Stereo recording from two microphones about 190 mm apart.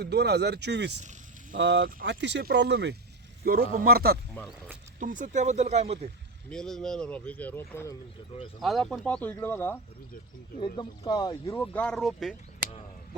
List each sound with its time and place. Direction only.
0.0 s speech: 60° right (ahead or behind)
1.5 s speech: 80° right
2.0 s speech: 65° right (ahead or behind)
3.4 s speech: 50° right (ahead or behind)
4.4 s speech: 5° right (ahead or behind)
4.9 s speech: 45° right (ahead or behind)
6.5 s speech: 5° left (ahead or behind)
8.6 s speech: centre (ahead or behind)
10.8 s speech: 20° left (ahead or behind)
11.5 s speech: 5° left (ahead or behind)